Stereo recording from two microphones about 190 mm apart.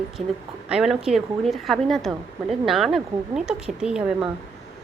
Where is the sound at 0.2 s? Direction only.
40° right (ahead or behind).